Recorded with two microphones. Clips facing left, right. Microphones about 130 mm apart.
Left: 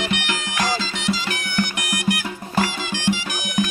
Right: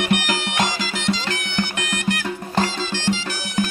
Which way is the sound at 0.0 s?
45° right (ahead or behind).